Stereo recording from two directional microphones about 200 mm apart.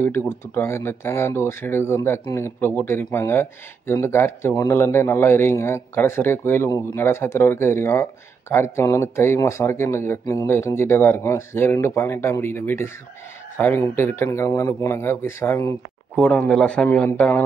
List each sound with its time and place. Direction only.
0.0 s a man's voice: 10° left (ahead or behind)